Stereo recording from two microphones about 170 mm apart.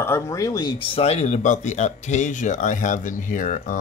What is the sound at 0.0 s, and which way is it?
Speech, 15° left (ahead or behind).